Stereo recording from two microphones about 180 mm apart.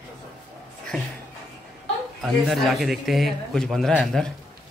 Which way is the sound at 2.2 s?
Centre (ahead or behind).